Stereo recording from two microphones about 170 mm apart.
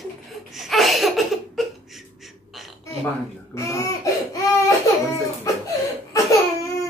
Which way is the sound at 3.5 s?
20° left (ahead or behind).